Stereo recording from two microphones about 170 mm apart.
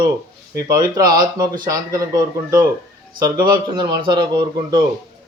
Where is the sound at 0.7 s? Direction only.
20° right (ahead or behind).